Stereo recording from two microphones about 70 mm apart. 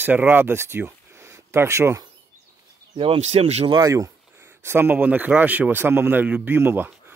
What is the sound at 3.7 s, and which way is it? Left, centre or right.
Speech, right.